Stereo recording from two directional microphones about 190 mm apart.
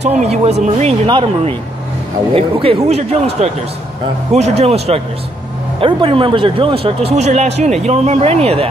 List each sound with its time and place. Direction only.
0.0 s speech: 35° right (ahead or behind)